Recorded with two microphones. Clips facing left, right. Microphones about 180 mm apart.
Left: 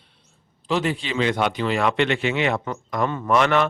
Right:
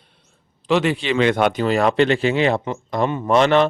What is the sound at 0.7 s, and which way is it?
Speech, 75° right (ahead or behind).